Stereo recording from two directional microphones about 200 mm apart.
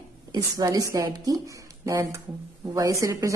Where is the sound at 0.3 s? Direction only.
20° right (ahead or behind).